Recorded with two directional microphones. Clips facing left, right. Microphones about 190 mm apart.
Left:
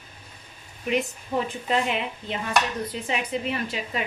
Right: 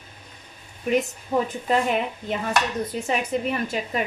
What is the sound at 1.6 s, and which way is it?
A woman's voice, 45° right (ahead or behind).